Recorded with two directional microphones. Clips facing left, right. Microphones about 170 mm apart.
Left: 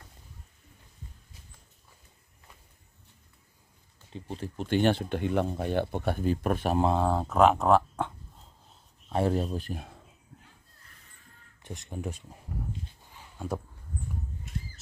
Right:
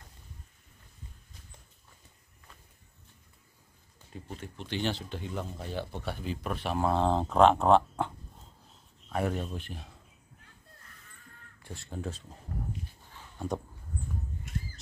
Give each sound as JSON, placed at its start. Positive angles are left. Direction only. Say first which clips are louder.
{"t": 4.1, "sound": "speech", "louder": "left 5 dB", "side_deg": 35}
{"t": 4.6, "sound": "speech", "louder": "left 8 dB", "side_deg": 55}
{"t": 7.0, "sound": "speech", "louder": "right 3 dB", "side_deg": 5}
{"t": 9.1, "sound": "speech", "louder": "left 5 dB", "side_deg": 30}
{"t": 11.6, "sound": "speech", "louder": "left 2 dB", "side_deg": 20}
{"t": 13.1, "sound": "a sound", "louder": "even", "side_deg": 5}